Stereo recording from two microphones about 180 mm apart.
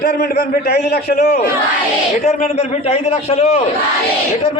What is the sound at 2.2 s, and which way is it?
A man's voice, 45° left (ahead or behind).